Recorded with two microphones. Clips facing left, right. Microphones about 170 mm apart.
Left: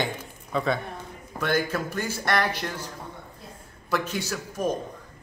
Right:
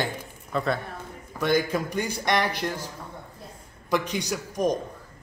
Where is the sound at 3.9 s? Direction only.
15° right (ahead or behind).